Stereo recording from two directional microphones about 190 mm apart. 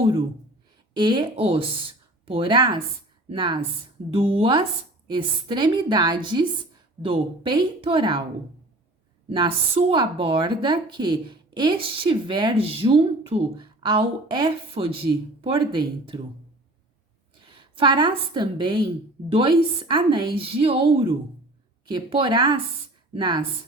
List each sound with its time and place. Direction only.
0.9 s a woman's voice: 25° right (ahead or behind)
9.3 s a woman's voice: 25° right (ahead or behind)
17.4 s a woman's voice: 25° right (ahead or behind)